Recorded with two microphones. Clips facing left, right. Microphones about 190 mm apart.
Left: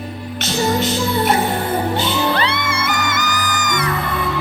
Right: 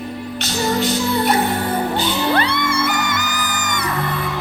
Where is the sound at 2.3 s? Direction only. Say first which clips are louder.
Right 2 dB; 55° right (ahead or behind).